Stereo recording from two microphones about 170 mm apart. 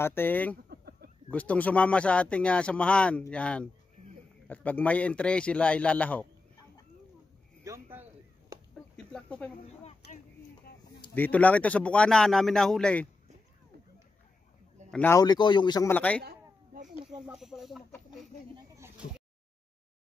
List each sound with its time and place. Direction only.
0.0 s speech: 10° left (ahead or behind)
0.7 s a sound: 65° right (ahead or behind)
1.3 s speech: 10° left (ahead or behind)
7.6 s chop: 15° right (ahead or behind)
8.9 s speech: 5° left (ahead or behind)
9.8 s a sound: 40° left (ahead or behind)
11.1 s speech: 10° left (ahead or behind)
14.9 s speech: 10° left (ahead or behind)
15.1 s speech: 25° left (ahead or behind)
15.9 s speech: 10° left (ahead or behind)
16.2 s a sound: 65° right (ahead or behind)
17.2 s speech: centre (ahead or behind)
18.8 s a sound: 5° right (ahead or behind)